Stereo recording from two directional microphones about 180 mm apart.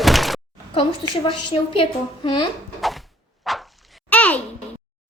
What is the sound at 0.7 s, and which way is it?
A woman's voice, 30° left (ahead or behind).